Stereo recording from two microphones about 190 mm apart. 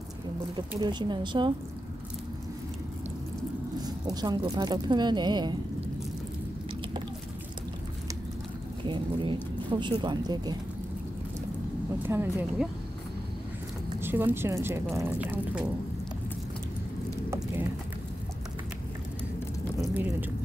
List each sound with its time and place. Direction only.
0.6 s speech: 25° right (ahead or behind)
3.8 s speech: 20° right (ahead or behind)
8.8 s speech: 25° right (ahead or behind)
12.0 s speech: 10° right (ahead or behind)
13.9 s a woman's voice: 10° right (ahead or behind)
17.3 s a sound: 15° right (ahead or behind)